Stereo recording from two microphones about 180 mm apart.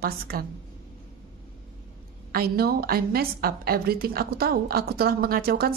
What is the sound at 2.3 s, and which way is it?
A woman's voice, 60° right (ahead or behind).